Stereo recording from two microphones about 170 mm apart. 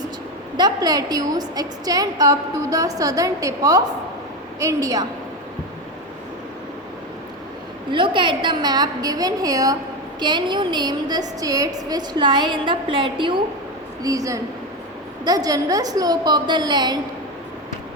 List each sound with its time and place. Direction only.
0.5 s a woman's voice: 25° right (ahead or behind)
7.9 s a woman's voice: 30° right (ahead or behind)